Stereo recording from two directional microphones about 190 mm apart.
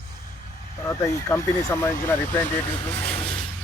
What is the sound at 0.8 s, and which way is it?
Speech, 15° left (ahead or behind).